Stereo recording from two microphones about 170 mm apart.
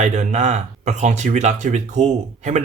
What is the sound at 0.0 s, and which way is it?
Speech, 45° right (ahead or behind).